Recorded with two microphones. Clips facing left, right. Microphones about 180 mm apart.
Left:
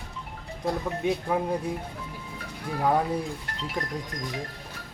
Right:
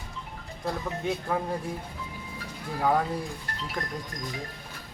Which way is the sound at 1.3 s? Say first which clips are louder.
Left 1 dB; 10° left (ahead or behind).